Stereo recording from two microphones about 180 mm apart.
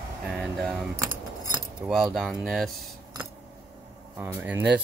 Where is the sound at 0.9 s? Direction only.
20° right (ahead or behind).